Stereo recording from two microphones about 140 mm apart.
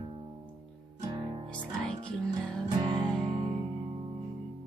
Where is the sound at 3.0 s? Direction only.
5° left (ahead or behind).